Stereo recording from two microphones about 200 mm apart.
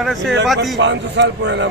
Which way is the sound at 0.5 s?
60° right (ahead or behind).